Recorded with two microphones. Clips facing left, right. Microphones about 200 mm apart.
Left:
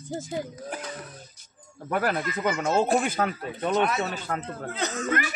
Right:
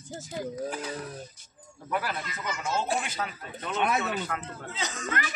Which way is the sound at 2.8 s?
45° left (ahead or behind).